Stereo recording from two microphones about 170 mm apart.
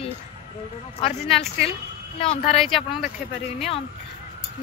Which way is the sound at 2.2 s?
35° left (ahead or behind).